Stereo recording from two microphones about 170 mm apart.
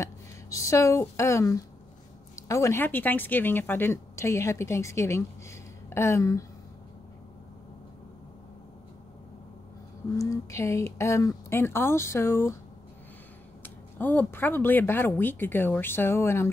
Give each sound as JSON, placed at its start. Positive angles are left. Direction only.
{"t": 0.0, "sound": "speech", "side_deg": 20}
{"t": 10.1, "sound": "speech", "side_deg": 20}
{"t": 13.6, "sound": "speech", "side_deg": 10}